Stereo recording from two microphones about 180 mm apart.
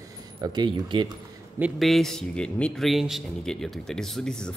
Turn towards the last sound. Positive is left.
turn(degrees=5)  # may be behind; listen again after turning